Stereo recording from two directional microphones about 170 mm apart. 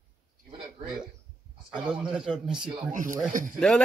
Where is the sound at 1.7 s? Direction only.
5° right (ahead or behind).